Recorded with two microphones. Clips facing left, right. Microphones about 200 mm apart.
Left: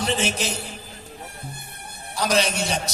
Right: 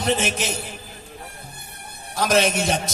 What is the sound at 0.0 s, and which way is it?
Speech, 55° right (ahead or behind).